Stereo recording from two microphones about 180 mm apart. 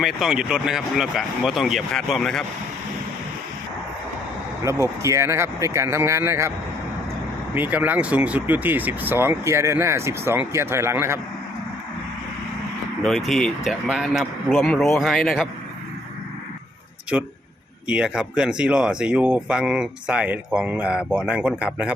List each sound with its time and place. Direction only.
0.0 s speech: centre (ahead or behind)
4.6 s speech: 15° right (ahead or behind)
7.5 s speech: 10° right (ahead or behind)
13.0 s speech: 5° left (ahead or behind)
17.8 s speech: 5° right (ahead or behind)